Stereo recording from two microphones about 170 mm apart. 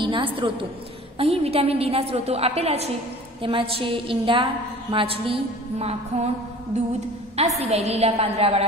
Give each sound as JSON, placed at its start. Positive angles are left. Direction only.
{"t": 0.0, "sound": "a woman's voice", "side_deg": -30}
{"t": 6.7, "sound": "a sound", "side_deg": -40}
{"t": 7.3, "sound": "a woman's voice", "side_deg": -40}